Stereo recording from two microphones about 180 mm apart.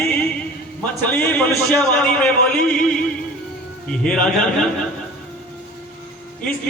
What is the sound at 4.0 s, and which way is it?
Speech, 5° left (ahead or behind).